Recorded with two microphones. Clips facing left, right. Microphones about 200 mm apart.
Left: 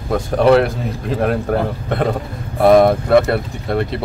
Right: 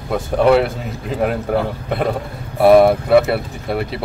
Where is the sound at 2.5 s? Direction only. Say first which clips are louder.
Right 1 dB; 5° right (ahead or behind).